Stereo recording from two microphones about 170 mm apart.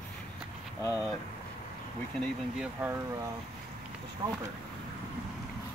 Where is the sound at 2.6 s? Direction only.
10° right (ahead or behind).